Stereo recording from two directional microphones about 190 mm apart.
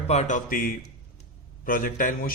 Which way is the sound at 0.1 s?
40° left (ahead or behind).